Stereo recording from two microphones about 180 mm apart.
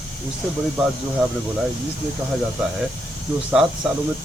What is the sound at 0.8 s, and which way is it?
Speech, centre (ahead or behind).